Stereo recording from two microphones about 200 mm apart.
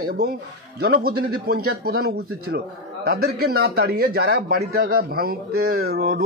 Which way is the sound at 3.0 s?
50° right (ahead or behind).